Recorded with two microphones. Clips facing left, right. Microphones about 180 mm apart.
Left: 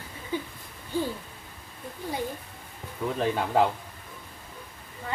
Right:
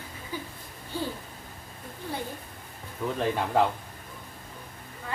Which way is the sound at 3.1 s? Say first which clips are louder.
Left 1 dB; centre (ahead or behind).